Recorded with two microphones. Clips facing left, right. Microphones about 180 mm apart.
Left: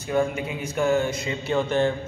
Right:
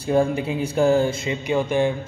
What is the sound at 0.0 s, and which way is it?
Speech, 30° right (ahead or behind).